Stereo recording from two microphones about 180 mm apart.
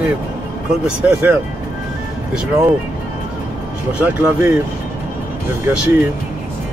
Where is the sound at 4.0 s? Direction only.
10° right (ahead or behind).